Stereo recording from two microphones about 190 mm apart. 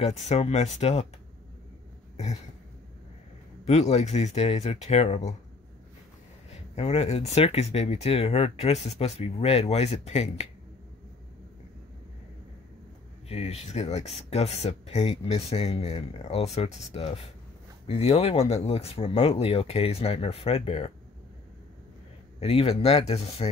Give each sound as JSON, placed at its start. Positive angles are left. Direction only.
{"t": 0.0, "sound": "speech", "side_deg": 35}
{"t": 3.6, "sound": "speech", "side_deg": 35}
{"t": 6.7, "sound": "speech", "side_deg": 35}
{"t": 13.3, "sound": "speech", "side_deg": 35}
{"t": 22.4, "sound": "speech", "side_deg": 30}